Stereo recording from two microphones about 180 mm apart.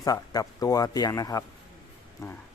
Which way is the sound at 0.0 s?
20° left (ahead or behind).